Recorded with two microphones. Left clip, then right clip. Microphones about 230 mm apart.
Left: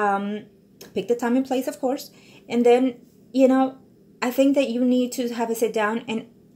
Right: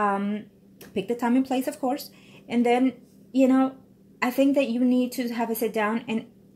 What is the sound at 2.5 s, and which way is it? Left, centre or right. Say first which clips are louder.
A woman's voice: left 5 dB; right.